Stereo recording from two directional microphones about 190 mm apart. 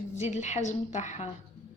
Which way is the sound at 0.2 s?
40° left (ahead or behind).